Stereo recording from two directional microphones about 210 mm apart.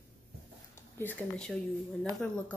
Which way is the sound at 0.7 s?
10° left (ahead or behind).